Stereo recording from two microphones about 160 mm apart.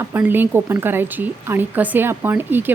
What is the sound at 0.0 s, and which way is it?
A woman's voice, 15° right (ahead or behind).